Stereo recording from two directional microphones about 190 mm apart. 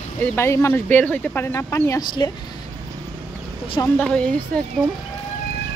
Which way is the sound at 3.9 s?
5° left (ahead or behind).